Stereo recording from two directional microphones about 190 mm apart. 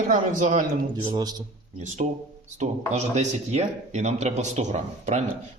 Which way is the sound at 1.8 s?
40° right (ahead or behind).